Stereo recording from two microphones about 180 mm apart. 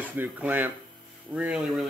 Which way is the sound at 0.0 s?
10° right (ahead or behind).